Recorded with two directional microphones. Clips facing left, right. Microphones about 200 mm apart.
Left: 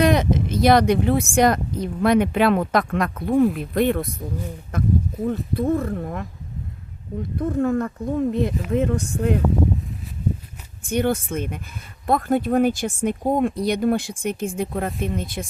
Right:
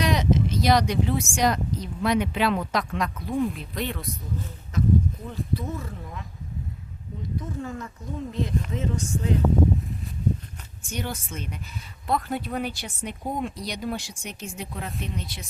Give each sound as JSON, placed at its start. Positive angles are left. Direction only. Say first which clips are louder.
{"t": 0.0, "sound": "speech", "louder": "left 5 dB", "side_deg": 55}
{"t": 7.3, "sound": "speech", "louder": "left 13 dB", "side_deg": 60}
{"t": 10.8, "sound": "speech", "louder": "left 12 dB", "side_deg": 55}